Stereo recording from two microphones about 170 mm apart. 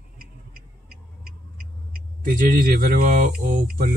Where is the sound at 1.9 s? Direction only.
55° right (ahead or behind).